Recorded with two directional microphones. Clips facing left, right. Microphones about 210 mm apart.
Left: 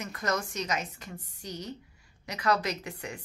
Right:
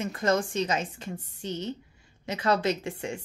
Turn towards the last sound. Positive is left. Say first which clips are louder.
# right 6 dB
turn(degrees=-25)  # may be behind; listen again after turning